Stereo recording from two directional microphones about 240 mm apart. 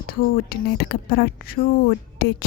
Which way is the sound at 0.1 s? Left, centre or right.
Left.